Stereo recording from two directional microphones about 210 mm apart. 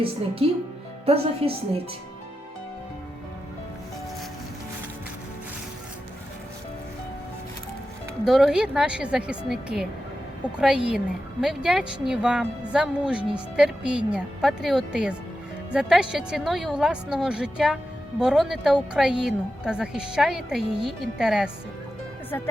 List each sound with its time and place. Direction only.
1.0 s speech: 30° right (ahead or behind)
8.2 s a woman's voice: centre (ahead or behind)